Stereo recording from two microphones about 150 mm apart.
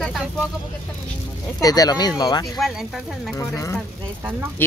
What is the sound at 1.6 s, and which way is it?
Speech, 25° left (ahead or behind).